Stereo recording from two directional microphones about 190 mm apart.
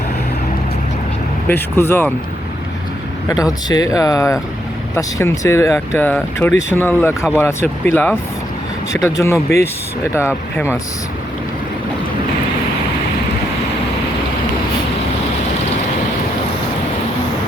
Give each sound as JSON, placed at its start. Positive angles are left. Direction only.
{"t": 1.5, "sound": "speech", "side_deg": 10}
{"t": 3.2, "sound": "speech", "side_deg": 20}